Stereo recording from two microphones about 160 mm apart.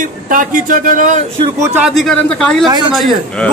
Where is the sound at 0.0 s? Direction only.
55° right (ahead or behind).